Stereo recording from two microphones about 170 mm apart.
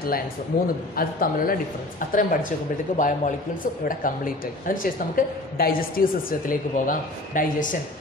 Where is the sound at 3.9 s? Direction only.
55° left (ahead or behind).